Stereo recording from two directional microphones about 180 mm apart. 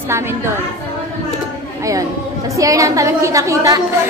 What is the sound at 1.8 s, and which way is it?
A woman's voice, 20° right (ahead or behind).